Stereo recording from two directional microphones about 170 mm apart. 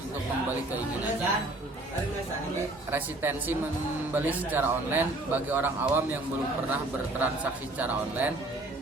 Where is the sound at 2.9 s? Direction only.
10° right (ahead or behind).